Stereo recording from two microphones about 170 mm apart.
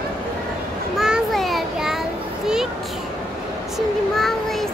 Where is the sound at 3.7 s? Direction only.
Centre (ahead or behind).